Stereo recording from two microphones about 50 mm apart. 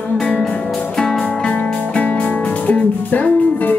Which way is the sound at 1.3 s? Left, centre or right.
Left.